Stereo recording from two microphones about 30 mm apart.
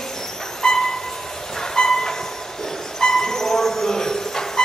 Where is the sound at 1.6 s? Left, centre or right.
Centre.